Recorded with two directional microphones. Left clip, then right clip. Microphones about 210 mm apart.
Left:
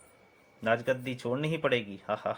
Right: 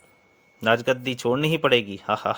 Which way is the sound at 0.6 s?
45° right (ahead or behind).